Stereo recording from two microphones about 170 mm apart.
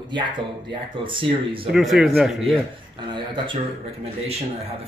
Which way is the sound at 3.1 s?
30° right (ahead or behind).